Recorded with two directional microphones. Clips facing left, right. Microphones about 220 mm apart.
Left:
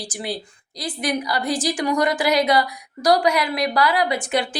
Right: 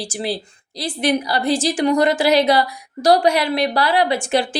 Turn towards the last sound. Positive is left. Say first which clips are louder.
# right 4 dB
turn(degrees=-30)  # may be behind; listen again after turning